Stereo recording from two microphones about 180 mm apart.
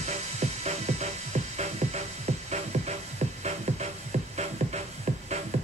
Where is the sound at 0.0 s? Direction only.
40° right (ahead or behind).